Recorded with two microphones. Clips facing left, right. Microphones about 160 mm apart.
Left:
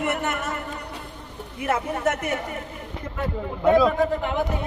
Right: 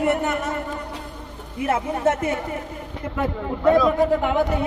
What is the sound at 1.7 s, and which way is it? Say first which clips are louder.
Speech: right 3 dB; 25° right (ahead or behind).